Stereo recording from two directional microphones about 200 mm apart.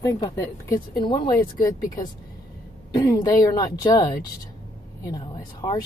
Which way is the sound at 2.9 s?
20° left (ahead or behind).